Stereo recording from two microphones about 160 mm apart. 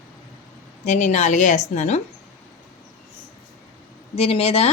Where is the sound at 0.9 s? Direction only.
50° left (ahead or behind).